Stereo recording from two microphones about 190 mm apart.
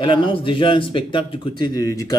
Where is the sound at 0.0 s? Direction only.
25° left (ahead or behind).